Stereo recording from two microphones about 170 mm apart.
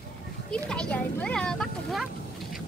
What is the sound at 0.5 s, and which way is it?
Speech, 5° left (ahead or behind).